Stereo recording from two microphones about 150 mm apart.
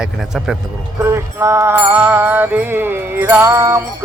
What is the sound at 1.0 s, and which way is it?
Speech, 15° right (ahead or behind).